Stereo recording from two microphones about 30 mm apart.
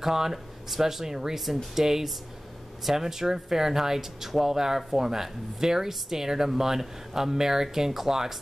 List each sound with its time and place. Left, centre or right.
0.0 s speech: centre